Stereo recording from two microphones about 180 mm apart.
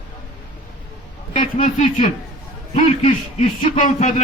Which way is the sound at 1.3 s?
45° left (ahead or behind).